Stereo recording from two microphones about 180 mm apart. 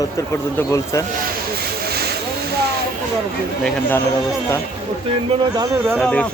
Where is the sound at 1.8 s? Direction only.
60° right (ahead or behind).